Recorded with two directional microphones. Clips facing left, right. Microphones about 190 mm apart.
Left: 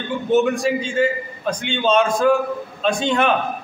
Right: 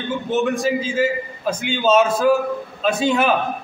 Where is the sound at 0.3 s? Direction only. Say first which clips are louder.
Left 3 dB; centre (ahead or behind).